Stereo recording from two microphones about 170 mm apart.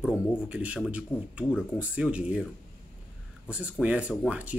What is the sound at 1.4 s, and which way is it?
Speech, 15° left (ahead or behind).